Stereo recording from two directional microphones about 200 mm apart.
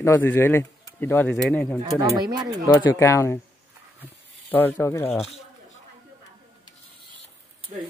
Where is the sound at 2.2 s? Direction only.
20° right (ahead or behind).